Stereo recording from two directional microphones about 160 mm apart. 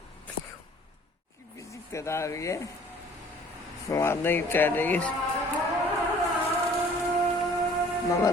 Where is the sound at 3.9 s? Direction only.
15° left (ahead or behind).